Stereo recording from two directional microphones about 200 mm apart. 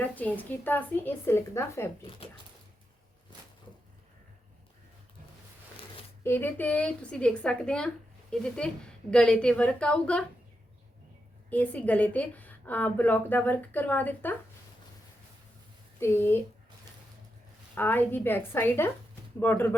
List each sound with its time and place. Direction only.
0.3 s a woman's voice: 10° left (ahead or behind)
2.0 s speech: 25° left (ahead or behind)
6.2 s a woman's voice: 10° left (ahead or behind)
11.4 s a woman's voice: 10° left (ahead or behind)
16.0 s a woman's voice: 10° left (ahead or behind)
17.7 s a woman's voice: 10° left (ahead or behind)